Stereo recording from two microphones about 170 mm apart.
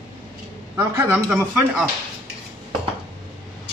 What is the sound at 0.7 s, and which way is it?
Speech, 15° right (ahead or behind).